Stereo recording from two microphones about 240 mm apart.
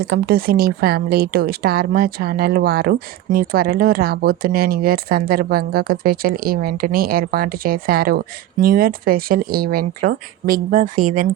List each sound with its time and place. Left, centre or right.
0.1 s a woman's voice: right